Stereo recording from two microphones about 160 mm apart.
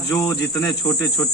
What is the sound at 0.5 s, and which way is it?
Speech, 5° left (ahead or behind).